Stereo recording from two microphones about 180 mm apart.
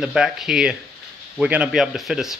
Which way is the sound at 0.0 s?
5° right (ahead or behind).